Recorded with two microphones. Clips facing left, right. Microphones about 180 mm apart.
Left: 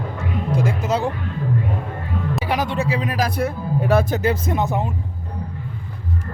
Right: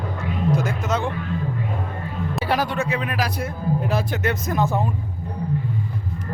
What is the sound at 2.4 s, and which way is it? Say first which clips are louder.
Music: right 2 dB; 20° left (ahead or behind).